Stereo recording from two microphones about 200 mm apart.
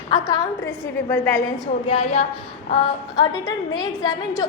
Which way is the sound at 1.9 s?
30° left (ahead or behind).